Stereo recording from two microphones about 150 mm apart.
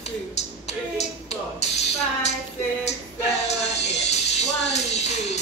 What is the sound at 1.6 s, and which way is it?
Music, 45° left (ahead or behind).